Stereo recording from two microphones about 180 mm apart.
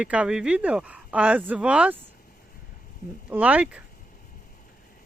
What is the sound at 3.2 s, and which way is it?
Speech, 10° right (ahead or behind).